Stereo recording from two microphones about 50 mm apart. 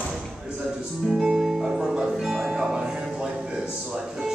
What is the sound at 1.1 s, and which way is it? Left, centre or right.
Music, centre.